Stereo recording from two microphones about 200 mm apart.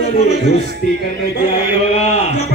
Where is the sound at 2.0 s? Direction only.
35° left (ahead or behind).